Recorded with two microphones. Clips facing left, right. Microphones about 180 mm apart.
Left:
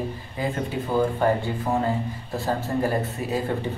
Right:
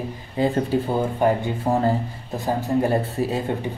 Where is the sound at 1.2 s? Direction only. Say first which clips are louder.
Right 4 dB; 15° right (ahead or behind).